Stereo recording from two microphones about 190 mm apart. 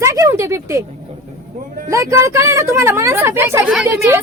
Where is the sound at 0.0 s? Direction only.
15° right (ahead or behind).